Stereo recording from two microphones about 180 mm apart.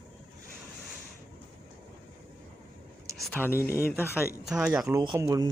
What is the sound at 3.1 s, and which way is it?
Speech, 5° left (ahead or behind).